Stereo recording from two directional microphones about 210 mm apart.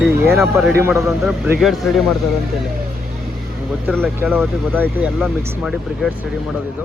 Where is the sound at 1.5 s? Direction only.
Centre (ahead or behind).